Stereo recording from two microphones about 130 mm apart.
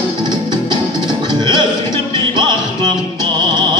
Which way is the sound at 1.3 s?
35° right (ahead or behind).